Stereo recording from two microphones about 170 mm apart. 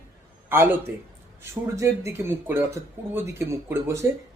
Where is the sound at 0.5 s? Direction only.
15° right (ahead or behind).